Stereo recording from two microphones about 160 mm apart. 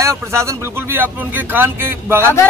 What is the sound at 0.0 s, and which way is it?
Speech, 15° right (ahead or behind).